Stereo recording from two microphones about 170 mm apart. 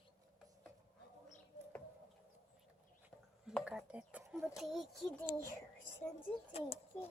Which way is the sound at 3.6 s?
5° right (ahead or behind).